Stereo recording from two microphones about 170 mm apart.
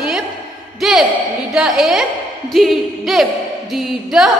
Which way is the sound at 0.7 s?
Centre (ahead or behind).